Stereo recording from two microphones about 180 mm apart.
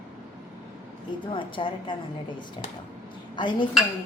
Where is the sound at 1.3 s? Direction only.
30° left (ahead or behind).